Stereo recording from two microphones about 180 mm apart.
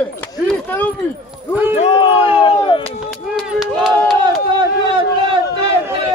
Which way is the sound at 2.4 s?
30° left (ahead or behind).